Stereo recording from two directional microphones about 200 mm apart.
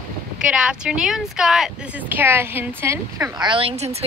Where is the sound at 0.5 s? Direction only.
5° right (ahead or behind).